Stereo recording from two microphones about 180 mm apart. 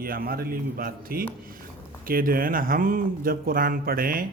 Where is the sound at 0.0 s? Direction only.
55° right (ahead or behind).